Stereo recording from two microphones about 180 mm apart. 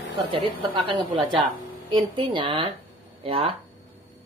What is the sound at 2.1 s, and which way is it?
Speech, 25° right (ahead or behind).